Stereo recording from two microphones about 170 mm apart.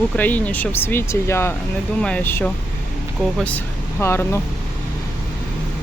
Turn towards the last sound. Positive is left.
turn(degrees=15)  # may be behind; listen again after turning